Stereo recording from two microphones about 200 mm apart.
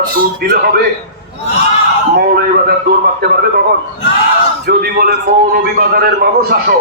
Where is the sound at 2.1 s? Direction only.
50° right (ahead or behind).